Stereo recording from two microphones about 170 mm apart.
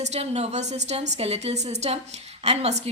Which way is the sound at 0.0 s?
40° right (ahead or behind).